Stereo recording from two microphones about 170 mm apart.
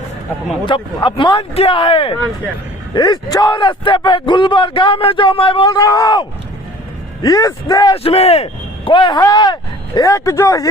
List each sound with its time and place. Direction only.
0.6 s speech: 30° left (ahead or behind)
7.9 s speech: 35° left (ahead or behind); by 10.7 s 20° left (ahead or behind)